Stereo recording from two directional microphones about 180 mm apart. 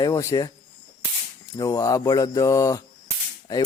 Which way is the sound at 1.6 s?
20° left (ahead or behind).